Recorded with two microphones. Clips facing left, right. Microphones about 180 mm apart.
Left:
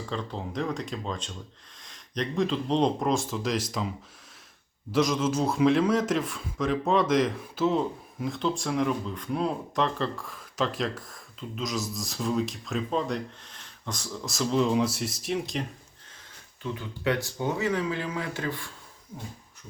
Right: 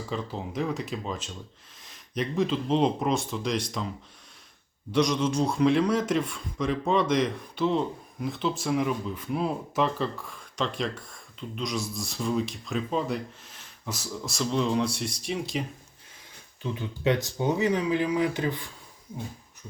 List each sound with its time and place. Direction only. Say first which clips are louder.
0.1 s a man's voice: right 1 dB; 5° right (ahead or behind)
4.9 s a man's voice: even; centre (ahead or behind)
16.7 s speech: right 3 dB; 20° right (ahead or behind)